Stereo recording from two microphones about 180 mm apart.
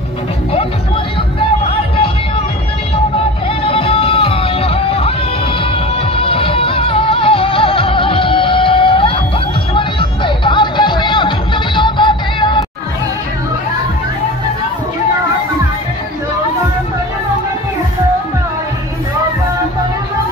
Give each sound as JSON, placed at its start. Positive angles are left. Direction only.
{"t": 3.6, "sound": "music", "side_deg": 30}
{"t": 6.1, "sound": "music", "side_deg": 30}